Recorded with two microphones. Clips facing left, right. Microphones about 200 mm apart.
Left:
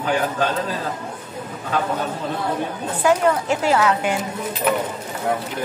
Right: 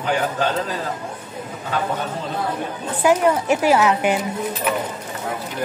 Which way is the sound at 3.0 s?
15° right (ahead or behind).